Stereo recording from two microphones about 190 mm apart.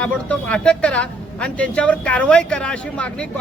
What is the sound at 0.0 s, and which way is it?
Speech, 5° left (ahead or behind).